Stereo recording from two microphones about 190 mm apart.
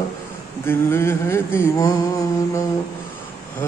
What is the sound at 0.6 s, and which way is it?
Mantra, 15° left (ahead or behind).